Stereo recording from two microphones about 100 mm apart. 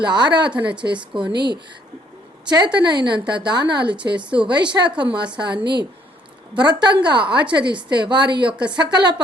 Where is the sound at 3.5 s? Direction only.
50° right (ahead or behind).